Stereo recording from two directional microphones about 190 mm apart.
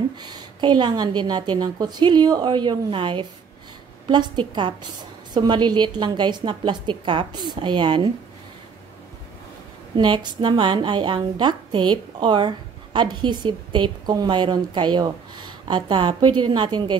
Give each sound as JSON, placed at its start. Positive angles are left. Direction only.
{"t": 0.2, "sound": "a woman's voice", "side_deg": -25}
{"t": 9.9, "sound": "a woman's voice", "side_deg": -25}